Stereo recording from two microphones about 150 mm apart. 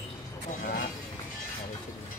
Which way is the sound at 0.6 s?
65° left (ahead or behind).